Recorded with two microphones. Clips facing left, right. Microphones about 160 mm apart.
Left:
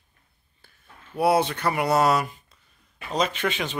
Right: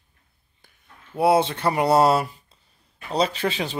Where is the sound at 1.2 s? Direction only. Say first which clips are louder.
Right 2 dB; 25° right (ahead or behind).